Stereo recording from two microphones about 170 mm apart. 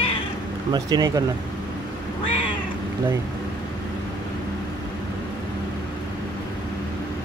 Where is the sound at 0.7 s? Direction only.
20° right (ahead or behind).